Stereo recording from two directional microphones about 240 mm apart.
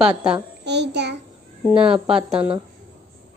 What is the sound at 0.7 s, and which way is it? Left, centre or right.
Speech, right.